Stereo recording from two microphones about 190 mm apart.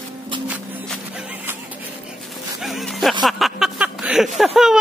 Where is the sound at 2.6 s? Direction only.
Centre (ahead or behind).